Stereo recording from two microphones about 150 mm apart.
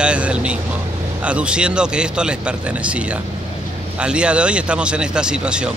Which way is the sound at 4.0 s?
5° right (ahead or behind).